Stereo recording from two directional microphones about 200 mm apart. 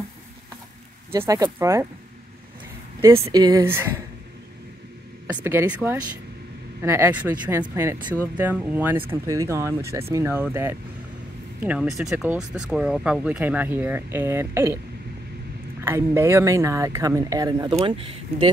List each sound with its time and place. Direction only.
1.1 s speech: 15° right (ahead or behind)
3.3 s speech: 20° right (ahead or behind)
5.2 s speech: 10° right (ahead or behind)
15.8 s speech: 10° right (ahead or behind)